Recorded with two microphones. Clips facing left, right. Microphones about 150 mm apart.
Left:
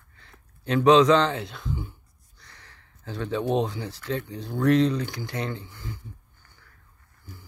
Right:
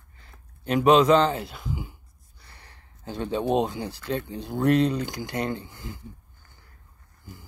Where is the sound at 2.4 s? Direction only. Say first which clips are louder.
Right 1 dB; 10° right (ahead or behind).